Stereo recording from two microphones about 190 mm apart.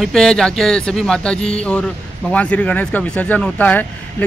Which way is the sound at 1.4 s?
35° left (ahead or behind).